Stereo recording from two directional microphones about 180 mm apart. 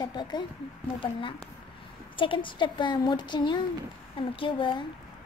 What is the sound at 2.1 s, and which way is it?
A woman's voice, 30° left (ahead or behind).